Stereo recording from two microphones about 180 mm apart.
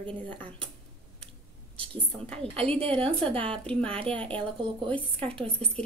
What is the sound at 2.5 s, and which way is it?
Speech, 30° right (ahead or behind).